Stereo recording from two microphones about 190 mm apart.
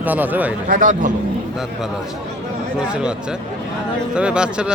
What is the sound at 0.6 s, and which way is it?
Speech, 45° right (ahead or behind).